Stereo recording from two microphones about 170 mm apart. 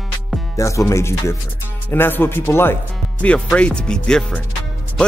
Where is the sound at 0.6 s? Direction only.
20° left (ahead or behind).